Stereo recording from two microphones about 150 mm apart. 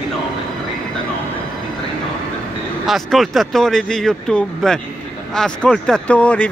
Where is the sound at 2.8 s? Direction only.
Centre (ahead or behind).